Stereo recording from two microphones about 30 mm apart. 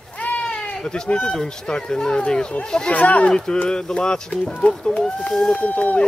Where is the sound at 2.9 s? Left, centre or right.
Left.